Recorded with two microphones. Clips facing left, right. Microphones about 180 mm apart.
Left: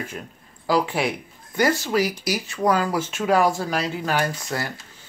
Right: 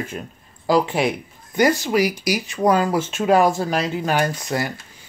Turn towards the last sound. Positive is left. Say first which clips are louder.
# right 4 dB
turn(degrees=-15)  # may be behind; listen again after turning